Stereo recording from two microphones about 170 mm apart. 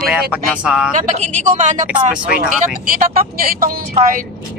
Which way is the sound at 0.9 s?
45° right (ahead or behind).